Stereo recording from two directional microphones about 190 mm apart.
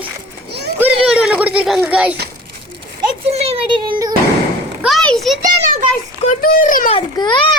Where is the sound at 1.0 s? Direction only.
5° right (ahead or behind).